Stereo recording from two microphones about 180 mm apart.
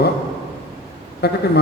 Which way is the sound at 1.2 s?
65° left (ahead or behind).